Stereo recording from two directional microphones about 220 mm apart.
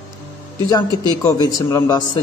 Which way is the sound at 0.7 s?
15° left (ahead or behind).